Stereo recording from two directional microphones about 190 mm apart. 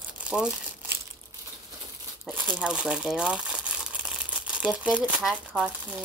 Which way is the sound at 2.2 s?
10° right (ahead or behind).